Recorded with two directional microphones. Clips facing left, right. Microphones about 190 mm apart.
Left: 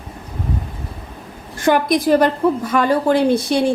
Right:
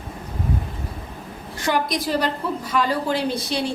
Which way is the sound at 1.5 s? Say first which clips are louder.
Left 7 dB; 50° left (ahead or behind).